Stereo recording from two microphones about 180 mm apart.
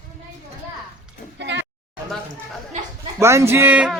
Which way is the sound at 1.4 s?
90° right.